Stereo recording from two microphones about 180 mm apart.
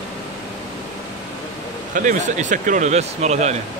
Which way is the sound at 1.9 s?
45° right (ahead or behind).